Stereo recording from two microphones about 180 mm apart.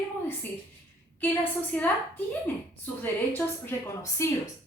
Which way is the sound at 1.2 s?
10° left (ahead or behind).